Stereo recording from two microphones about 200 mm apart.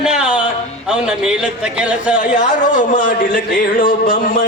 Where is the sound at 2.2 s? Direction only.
40° left (ahead or behind).